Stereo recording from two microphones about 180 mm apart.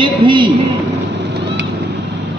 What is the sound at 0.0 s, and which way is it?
Speech, 25° right (ahead or behind).